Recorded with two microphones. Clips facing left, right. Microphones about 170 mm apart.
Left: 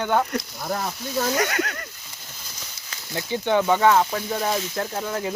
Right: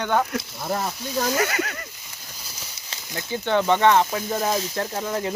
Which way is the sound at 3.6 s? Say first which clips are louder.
Right 1 dB; 5° left (ahead or behind).